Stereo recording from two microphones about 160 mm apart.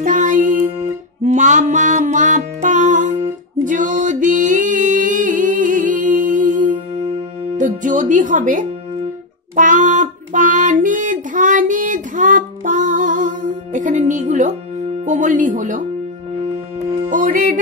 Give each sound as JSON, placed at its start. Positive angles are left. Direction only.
{"t": 0.0, "sound": "music", "side_deg": -55}
{"t": 9.6, "sound": "child singing", "side_deg": -50}
{"t": 15.0, "sound": "music", "side_deg": -50}
{"t": 17.1, "sound": "music", "side_deg": -55}